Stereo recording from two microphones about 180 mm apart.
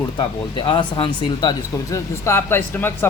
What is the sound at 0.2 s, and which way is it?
Speech, 25° left (ahead or behind).